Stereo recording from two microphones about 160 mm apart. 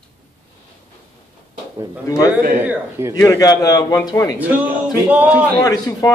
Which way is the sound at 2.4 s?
60° right (ahead or behind).